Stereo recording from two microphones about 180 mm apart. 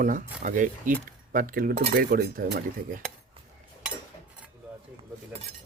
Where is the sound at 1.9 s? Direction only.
55° right (ahead or behind).